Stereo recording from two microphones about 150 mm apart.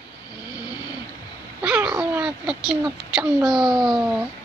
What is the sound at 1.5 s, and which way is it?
A child's voice, 10° right (ahead or behind).